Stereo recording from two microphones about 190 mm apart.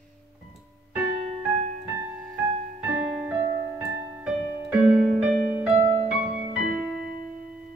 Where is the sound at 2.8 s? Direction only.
10° right (ahead or behind).